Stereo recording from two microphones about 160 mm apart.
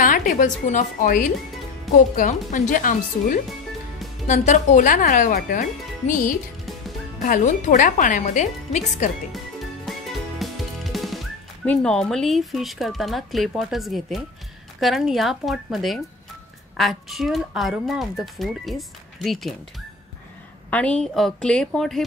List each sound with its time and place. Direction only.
0.0 s speech: 60° left (ahead or behind)
9.3 s music: centre (ahead or behind)
10.4 s speech: centre (ahead or behind)
20.7 s speech: 5° left (ahead or behind)